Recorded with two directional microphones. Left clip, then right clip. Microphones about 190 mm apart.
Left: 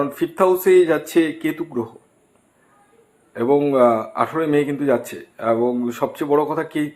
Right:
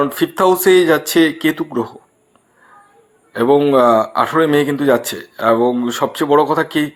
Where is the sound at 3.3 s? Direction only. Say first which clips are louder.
Right 5 dB; 35° right (ahead or behind).